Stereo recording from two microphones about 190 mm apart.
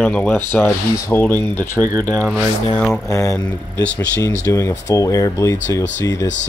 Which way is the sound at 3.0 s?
15° left (ahead or behind).